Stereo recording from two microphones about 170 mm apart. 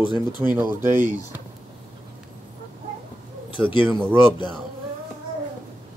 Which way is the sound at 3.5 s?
30° left (ahead or behind).